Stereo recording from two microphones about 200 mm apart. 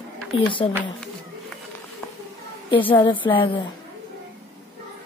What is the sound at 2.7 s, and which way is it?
Speech, 25° left (ahead or behind).